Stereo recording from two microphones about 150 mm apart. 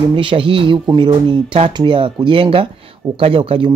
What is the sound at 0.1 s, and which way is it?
Speech, 35° right (ahead or behind).